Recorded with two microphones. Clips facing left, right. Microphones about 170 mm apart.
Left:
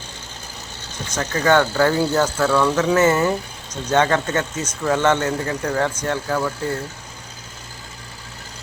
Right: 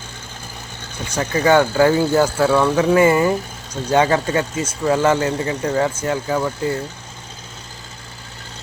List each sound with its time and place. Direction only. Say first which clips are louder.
1.0 s speech: right 2 dB; 10° right (ahead or behind)
2.4 s speech: right 1 dB; 25° right (ahead or behind)
2.7 s speech: right 3 dB; 10° right (ahead or behind)